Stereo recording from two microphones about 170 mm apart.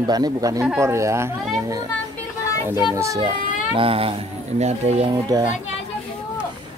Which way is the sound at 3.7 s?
35° right (ahead or behind).